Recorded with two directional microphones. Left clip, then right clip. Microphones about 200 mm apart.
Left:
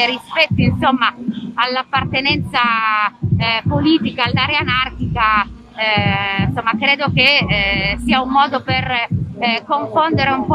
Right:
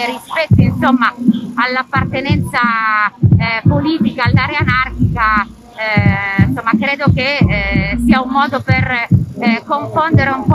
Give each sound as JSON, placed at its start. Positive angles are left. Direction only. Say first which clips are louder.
{"t": 0.0, "sound": "speech", "louder": "left 2 dB", "side_deg": 5}